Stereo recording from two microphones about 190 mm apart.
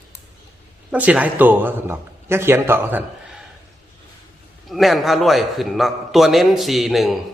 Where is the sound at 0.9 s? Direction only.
5° right (ahead or behind).